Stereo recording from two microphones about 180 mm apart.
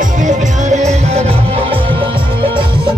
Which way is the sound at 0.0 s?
45° right (ahead or behind).